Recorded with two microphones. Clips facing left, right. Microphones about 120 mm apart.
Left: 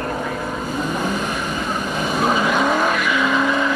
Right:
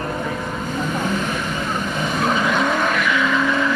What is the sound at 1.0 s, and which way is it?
Vehicle, 5° left (ahead or behind).